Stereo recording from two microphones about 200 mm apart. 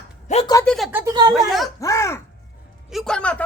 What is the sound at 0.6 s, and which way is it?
Speech, centre (ahead or behind).